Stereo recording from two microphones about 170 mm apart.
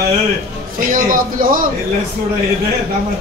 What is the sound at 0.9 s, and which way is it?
Speech, 55° right (ahead or behind).